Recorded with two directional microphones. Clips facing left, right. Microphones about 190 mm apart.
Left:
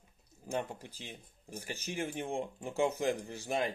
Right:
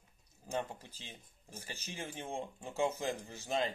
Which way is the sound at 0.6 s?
15° left (ahead or behind).